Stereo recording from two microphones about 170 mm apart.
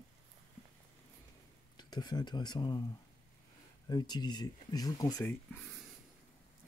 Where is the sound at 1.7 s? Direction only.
25° left (ahead or behind).